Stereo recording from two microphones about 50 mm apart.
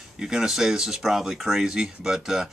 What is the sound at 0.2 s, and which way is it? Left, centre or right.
Speech, centre.